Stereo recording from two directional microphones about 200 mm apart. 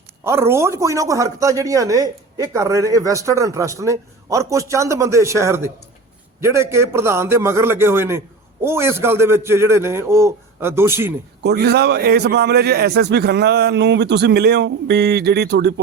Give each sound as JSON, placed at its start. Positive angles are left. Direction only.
{"t": 0.3, "sound": "speech", "side_deg": -15}
{"t": 11.4, "sound": "a man's voice", "side_deg": -55}